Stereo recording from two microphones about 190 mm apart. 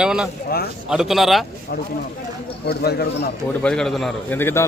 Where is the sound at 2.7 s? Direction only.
55° left (ahead or behind).